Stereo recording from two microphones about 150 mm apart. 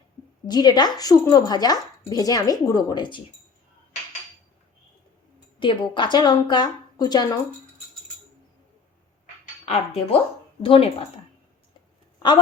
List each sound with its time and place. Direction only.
0.4 s speech: 25° left (ahead or behind)
5.5 s speech: 35° left (ahead or behind)
9.6 s speech: 40° left (ahead or behind)